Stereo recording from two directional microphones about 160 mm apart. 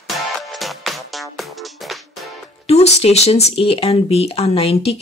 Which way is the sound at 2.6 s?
40° left (ahead or behind).